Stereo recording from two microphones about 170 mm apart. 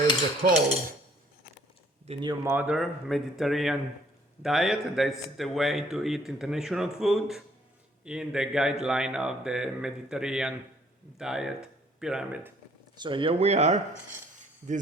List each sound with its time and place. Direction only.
0.4 s speech: 55° right (ahead or behind)
2.2 s speech: 20° right (ahead or behind)
13.0 s speech: 30° right (ahead or behind)